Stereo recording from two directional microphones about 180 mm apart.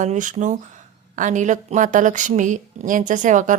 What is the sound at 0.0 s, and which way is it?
A woman's voice, 45° right (ahead or behind).